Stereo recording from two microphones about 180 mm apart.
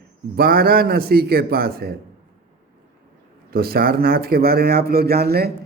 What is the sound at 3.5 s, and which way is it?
A man's voice, 60° right (ahead or behind).